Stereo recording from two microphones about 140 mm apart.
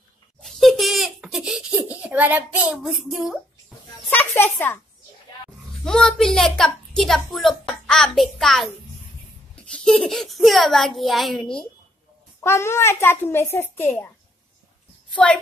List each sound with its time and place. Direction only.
0.4 s baby laughter: centre (ahead or behind)
4.1 s a sound: 15° left (ahead or behind)
5.9 s a child's voice: 5° left (ahead or behind)
9.7 s a child's voice: 5° left (ahead or behind)
12.4 s a child's voice: 20° left (ahead or behind)